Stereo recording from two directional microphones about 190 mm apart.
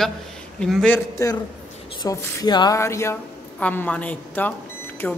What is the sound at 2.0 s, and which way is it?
A woman's voice, 20° left (ahead or behind).